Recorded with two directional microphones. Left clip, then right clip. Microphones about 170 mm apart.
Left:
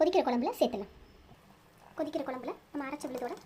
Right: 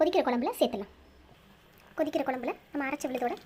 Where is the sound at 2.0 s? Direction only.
15° right (ahead or behind).